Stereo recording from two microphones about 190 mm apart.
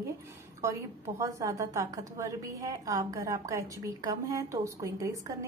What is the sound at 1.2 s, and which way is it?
A woman's voice, 15° right (ahead or behind).